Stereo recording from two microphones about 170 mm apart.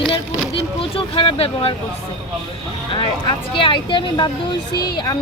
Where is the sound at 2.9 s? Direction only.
30° left (ahead or behind).